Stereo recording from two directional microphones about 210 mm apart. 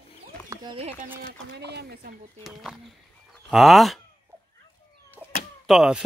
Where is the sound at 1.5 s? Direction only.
55° right (ahead or behind).